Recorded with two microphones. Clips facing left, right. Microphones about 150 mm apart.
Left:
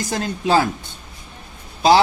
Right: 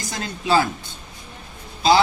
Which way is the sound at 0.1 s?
50° left (ahead or behind).